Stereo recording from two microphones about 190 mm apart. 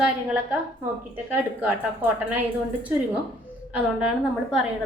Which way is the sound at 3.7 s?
5° right (ahead or behind).